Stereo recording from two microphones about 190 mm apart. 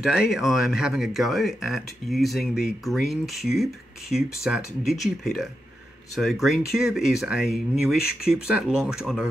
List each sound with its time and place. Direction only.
0.0 s speech: 5° right (ahead or behind)